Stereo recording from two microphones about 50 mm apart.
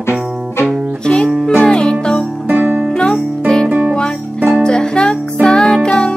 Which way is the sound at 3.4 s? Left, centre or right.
Centre.